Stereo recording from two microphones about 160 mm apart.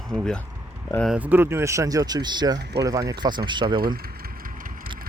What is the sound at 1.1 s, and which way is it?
Speech, 10° right (ahead or behind).